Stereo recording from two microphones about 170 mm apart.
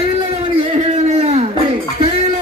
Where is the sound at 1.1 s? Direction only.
40° right (ahead or behind).